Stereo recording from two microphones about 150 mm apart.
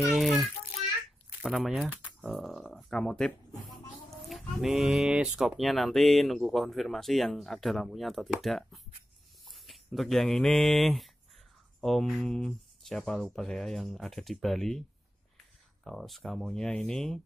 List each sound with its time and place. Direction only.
0.0 s child singing: centre (ahead or behind)
1.4 s speech: centre (ahead or behind)